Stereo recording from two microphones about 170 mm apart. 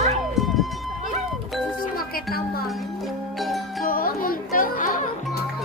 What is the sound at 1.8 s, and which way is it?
Music, 60° left (ahead or behind).